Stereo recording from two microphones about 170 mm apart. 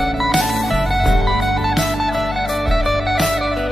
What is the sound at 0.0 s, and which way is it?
Music, centre (ahead or behind).